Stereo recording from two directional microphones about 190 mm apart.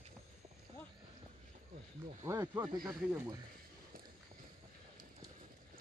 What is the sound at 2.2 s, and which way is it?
Speech, 15° right (ahead or behind).